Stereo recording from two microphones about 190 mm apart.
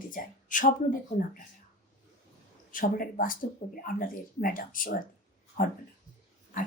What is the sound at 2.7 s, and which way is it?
Speech, 45° left (ahead or behind).